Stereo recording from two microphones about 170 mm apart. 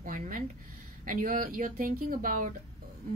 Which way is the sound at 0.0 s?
50° right (ahead or behind).